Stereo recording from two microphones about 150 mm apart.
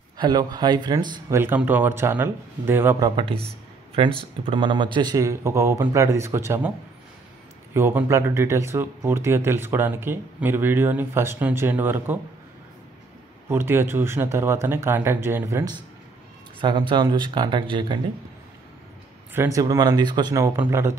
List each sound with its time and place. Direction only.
0.2 s speech: 30° right (ahead or behind)
1.3 s speech: 15° right (ahead or behind)
4.0 s speech: 40° right (ahead or behind); by 6.7 s 15° right (ahead or behind)
7.7 s speech: 15° right (ahead or behind)
13.5 s speech: 15° right (ahead or behind)
16.6 s speech: 30° right (ahead or behind)
19.3 s speech: 20° right (ahead or behind)